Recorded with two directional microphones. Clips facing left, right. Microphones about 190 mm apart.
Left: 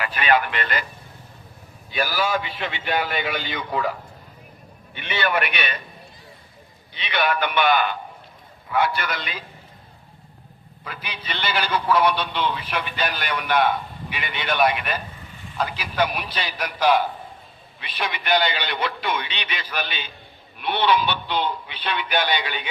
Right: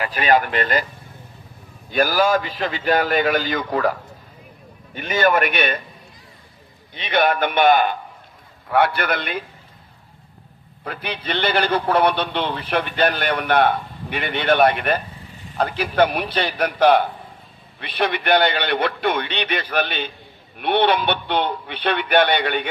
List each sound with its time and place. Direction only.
0.0 s speech: 40° right (ahead or behind)
1.9 s a man's voice: 45° right (ahead or behind)
4.9 s a man's voice: 45° right (ahead or behind)
6.9 s a man's voice: 50° right (ahead or behind)
8.7 s a man's voice: 60° right (ahead or behind)
10.8 s a man's voice: 55° right (ahead or behind)